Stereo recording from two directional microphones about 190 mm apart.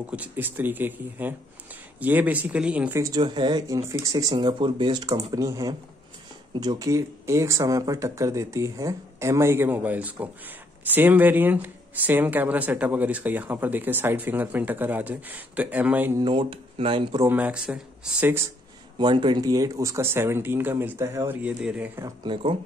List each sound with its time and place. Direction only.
0.1 s speech: 10° right (ahead or behind)
16.2 s speech: 25° right (ahead or behind)
17.2 s speech: 10° right (ahead or behind)
18.9 s speech: 25° right (ahead or behind)